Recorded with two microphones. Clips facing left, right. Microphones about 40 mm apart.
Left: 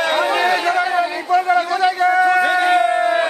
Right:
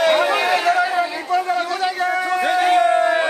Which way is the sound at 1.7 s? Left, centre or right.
Centre.